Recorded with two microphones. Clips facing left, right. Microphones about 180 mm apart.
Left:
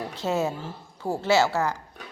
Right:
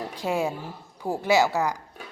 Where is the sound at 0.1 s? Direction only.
10° right (ahead or behind).